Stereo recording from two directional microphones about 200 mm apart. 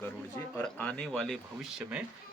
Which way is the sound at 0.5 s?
5° left (ahead or behind).